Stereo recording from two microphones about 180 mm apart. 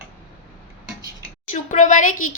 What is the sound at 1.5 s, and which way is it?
Speech, 45° left (ahead or behind).